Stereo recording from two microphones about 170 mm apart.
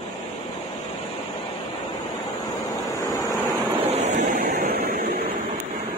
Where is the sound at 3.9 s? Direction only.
45° right (ahead or behind); by 5.2 s 65° right (ahead or behind).